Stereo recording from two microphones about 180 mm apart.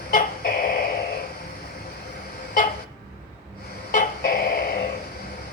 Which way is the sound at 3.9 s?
50° left (ahead or behind).